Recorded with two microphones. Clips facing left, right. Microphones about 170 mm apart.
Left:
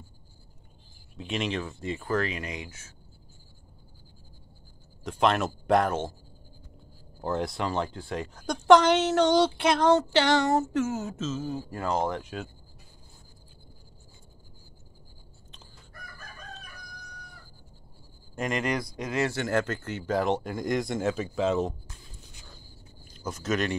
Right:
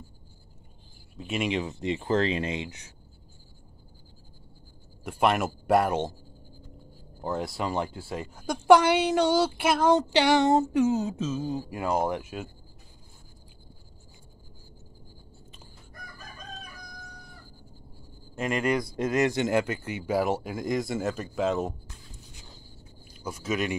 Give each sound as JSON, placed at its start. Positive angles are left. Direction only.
{"t": 1.1, "sound": "speech", "side_deg": -5}
{"t": 5.0, "sound": "speech", "side_deg": -10}
{"t": 7.2, "sound": "speech", "side_deg": 0}
{"t": 18.4, "sound": "speech", "side_deg": -10}
{"t": 18.8, "sound": "speech", "side_deg": -25}
{"t": 23.0, "sound": "speech", "side_deg": -10}